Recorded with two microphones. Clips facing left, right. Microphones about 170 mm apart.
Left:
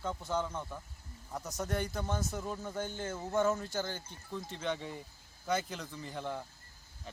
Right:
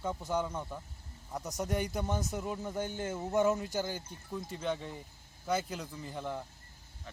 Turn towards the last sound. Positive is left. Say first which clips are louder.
# right 1 dB
turn(degrees=0)  # may be behind; listen again after turning